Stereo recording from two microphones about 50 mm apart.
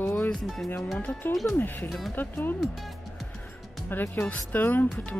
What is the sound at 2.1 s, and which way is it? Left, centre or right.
Speech, left.